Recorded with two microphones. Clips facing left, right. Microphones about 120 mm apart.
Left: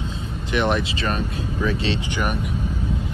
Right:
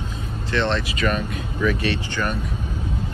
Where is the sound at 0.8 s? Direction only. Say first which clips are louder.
Right 2 dB; 30° left (ahead or behind).